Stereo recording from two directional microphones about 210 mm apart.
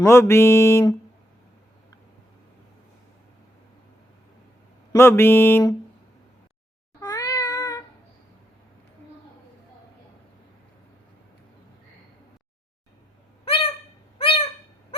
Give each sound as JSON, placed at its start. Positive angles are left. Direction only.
{"t": 0.0, "sound": "music", "side_deg": 10}
{"t": 4.9, "sound": "music", "side_deg": 10}
{"t": 7.0, "sound": "cat", "side_deg": 15}
{"t": 13.4, "sound": "a sound", "side_deg": 25}
{"t": 14.2, "sound": "bird", "side_deg": 25}